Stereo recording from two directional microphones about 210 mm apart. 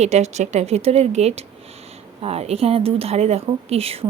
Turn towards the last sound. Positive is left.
turn(degrees=-30)  # may be behind; listen again after turning